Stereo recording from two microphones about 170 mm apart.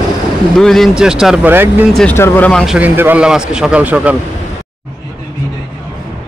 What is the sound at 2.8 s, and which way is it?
A man's voice, 10° right (ahead or behind).